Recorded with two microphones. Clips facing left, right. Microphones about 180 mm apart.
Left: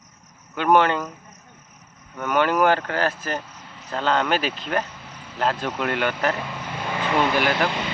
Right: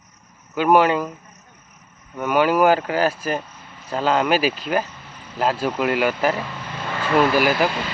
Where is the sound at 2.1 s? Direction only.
10° right (ahead or behind).